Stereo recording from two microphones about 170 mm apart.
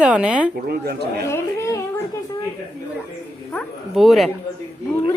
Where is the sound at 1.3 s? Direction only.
15° left (ahead or behind).